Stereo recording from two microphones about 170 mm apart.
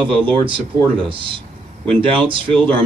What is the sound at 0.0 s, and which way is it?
A man's voice, 30° right (ahead or behind).